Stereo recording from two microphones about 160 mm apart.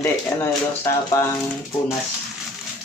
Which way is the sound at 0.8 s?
20° left (ahead or behind).